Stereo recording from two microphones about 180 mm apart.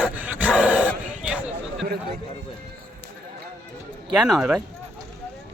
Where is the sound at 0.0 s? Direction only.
10° right (ahead or behind).